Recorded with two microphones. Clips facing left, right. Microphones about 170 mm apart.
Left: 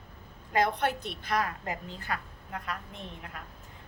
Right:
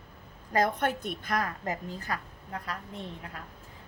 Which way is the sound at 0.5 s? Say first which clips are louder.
Even; 45° right (ahead or behind).